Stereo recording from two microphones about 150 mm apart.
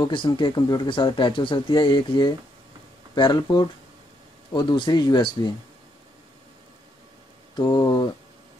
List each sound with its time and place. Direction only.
0.0 s speech: 30° left (ahead or behind)
7.5 s speech: 25° left (ahead or behind)